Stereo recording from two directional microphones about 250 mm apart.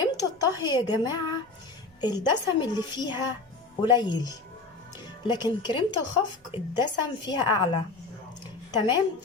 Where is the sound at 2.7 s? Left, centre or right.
Centre.